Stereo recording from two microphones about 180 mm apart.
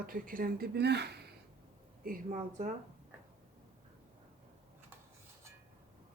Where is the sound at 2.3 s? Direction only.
40° right (ahead or behind).